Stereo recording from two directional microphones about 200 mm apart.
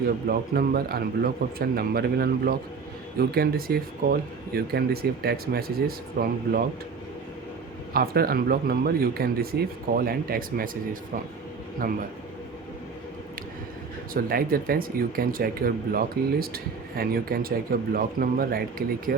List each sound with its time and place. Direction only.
0.3 s speech: 50° right (ahead or behind)
7.9 s speech: 50° right (ahead or behind)
11.8 s speech: 45° right (ahead or behind)
14.1 s speech: 45° right (ahead or behind)